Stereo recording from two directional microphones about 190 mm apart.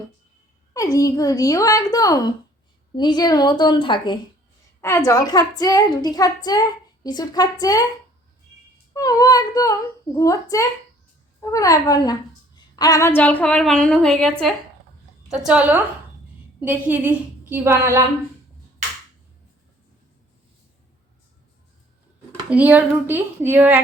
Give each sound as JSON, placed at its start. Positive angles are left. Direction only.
{"t": 0.7, "sound": "a woman's voice", "side_deg": 20}
{"t": 8.9, "sound": "a woman's voice", "side_deg": 20}
{"t": 22.4, "sound": "speech", "side_deg": -10}